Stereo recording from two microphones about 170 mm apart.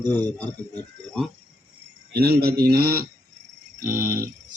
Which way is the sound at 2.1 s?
65° right (ahead or behind).